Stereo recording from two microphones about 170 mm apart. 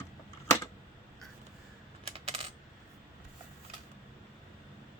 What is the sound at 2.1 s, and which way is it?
Coin, 40° right (ahead or behind).